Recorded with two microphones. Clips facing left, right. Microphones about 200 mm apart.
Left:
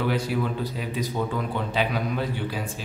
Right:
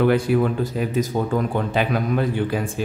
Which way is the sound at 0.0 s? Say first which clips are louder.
Right 8 dB; 55° right (ahead or behind).